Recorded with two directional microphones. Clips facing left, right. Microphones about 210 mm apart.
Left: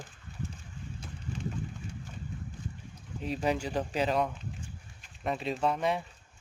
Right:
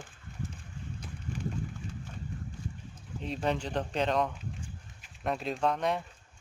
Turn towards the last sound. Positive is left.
turn(degrees=5)  # may be behind; listen again after turning